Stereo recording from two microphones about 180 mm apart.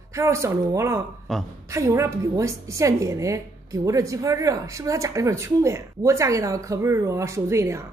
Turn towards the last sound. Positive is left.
turn(degrees=-15)  # may be behind; listen again after turning